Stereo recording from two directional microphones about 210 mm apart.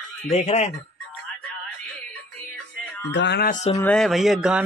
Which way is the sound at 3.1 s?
55° left (ahead or behind).